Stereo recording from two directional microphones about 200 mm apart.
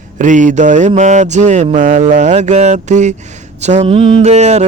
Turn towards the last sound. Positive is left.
turn(degrees=-35)  # may be behind; listen again after turning